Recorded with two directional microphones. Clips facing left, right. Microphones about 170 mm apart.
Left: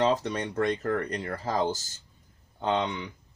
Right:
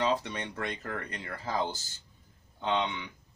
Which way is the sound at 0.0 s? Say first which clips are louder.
Left 5 dB; 40° left (ahead or behind).